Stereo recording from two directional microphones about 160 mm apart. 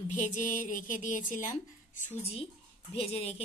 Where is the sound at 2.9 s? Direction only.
40° left (ahead or behind).